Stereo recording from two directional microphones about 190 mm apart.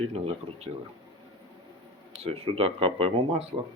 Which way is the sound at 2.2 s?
30° right (ahead or behind).